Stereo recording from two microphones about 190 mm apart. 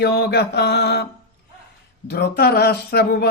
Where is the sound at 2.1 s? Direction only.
55° left (ahead or behind).